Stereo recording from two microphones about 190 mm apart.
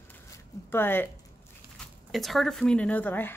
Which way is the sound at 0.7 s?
10° left (ahead or behind).